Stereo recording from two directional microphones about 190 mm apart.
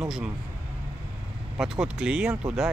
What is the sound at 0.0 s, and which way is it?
Speech, 5° right (ahead or behind).